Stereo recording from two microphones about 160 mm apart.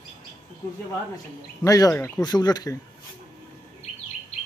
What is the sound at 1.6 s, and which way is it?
Speech, 20° left (ahead or behind).